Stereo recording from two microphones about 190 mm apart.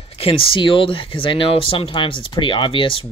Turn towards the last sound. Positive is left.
turn(degrees=30)  # may be behind; listen again after turning